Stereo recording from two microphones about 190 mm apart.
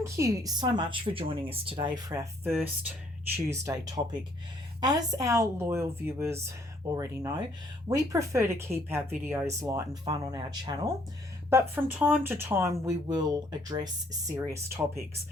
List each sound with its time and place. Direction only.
0.0 s speech: 15° right (ahead or behind)
11.5 s speech: 10° right (ahead or behind)